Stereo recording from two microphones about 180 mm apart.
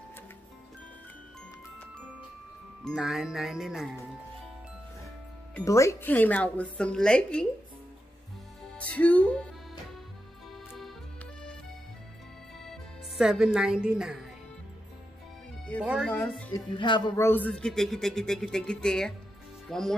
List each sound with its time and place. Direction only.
2.8 s speech: centre (ahead or behind)
5.5 s speech: 15° left (ahead or behind)
8.7 s music: 5° left (ahead or behind)
13.2 s speech: 5° right (ahead or behind)
15.8 s speech: 5° right (ahead or behind)
16.1 s speech: 10° left (ahead or behind)
16.5 s speech: 25° left (ahead or behind)
17.2 s speech: 10° left (ahead or behind)